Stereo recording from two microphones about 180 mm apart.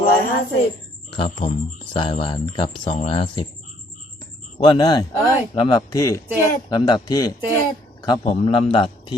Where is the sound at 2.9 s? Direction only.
30° left (ahead or behind).